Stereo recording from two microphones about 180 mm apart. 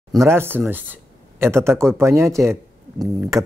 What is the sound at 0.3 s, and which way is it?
Speech, 10° right (ahead or behind).